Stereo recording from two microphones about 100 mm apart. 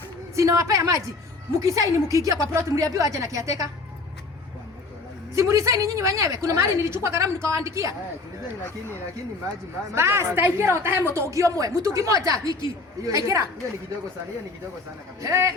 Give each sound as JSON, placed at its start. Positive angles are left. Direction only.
{"t": 0.3, "sound": "a woman's voice", "side_deg": -30}
{"t": 5.3, "sound": "a woman's voice", "side_deg": -30}
{"t": 9.9, "sound": "a woman's voice", "side_deg": -25}
{"t": 15.2, "sound": "a woman's voice", "side_deg": -30}